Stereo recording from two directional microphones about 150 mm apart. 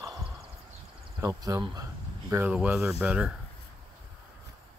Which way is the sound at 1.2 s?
20° right (ahead or behind).